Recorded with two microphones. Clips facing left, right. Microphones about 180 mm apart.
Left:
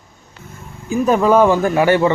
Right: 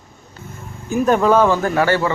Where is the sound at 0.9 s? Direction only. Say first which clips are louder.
Left 1 dB; centre (ahead or behind); by 2.1 s 20° left (ahead or behind).